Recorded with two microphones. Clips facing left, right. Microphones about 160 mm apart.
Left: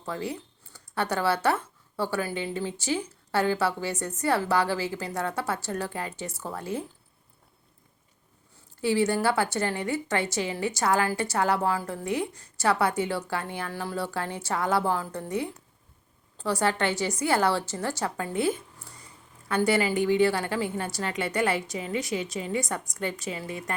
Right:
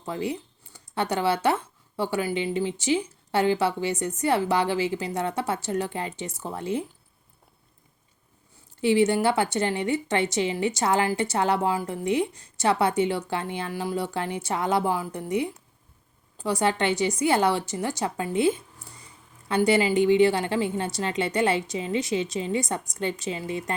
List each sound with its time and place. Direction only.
0.0 s speech: 20° right (ahead or behind)
8.8 s speech: 20° right (ahead or behind)